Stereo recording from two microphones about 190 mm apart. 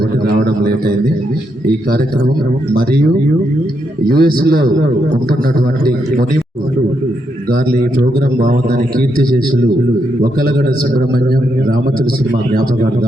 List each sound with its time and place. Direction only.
0.3 s a sound: 55° right (ahead or behind)
2.7 s a man's voice: 50° right (ahead or behind)
7.5 s a man's voice: 50° right (ahead or behind)